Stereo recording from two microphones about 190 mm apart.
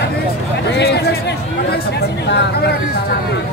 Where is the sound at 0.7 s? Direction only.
60° left (ahead or behind).